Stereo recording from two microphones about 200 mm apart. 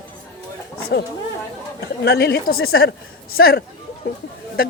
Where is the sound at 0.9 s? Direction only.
55° left (ahead or behind).